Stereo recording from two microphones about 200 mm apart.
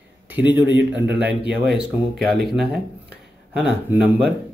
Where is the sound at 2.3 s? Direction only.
Centre (ahead or behind).